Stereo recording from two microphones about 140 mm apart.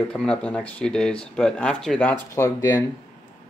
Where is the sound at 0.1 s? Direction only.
5° left (ahead or behind).